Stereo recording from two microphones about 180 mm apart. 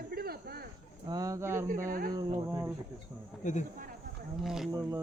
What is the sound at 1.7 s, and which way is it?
Speech, 50° right (ahead or behind).